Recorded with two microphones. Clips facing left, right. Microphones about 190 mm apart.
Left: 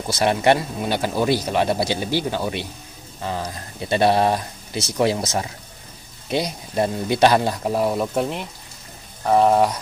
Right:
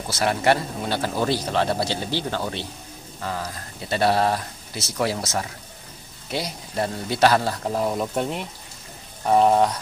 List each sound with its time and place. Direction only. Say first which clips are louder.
0.1 s speech: left 3 dB; 20° left (ahead or behind); by 9.7 s centre (ahead or behind)